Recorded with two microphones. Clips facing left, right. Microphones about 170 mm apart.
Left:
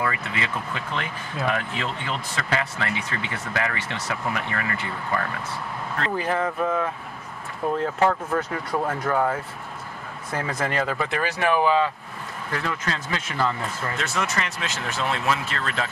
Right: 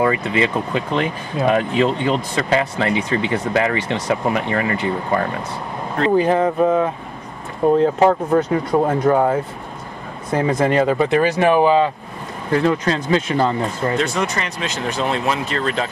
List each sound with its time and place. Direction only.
0.0 s speech: 20° right (ahead or behind)